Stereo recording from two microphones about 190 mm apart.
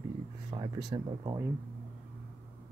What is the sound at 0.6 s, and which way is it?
Speech, 25° right (ahead or behind).